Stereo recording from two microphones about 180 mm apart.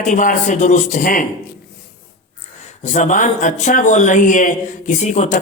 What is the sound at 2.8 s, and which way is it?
Speech, 40° left (ahead or behind).